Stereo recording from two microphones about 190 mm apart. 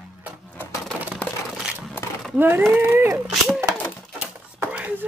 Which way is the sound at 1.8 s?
Centre (ahead or behind).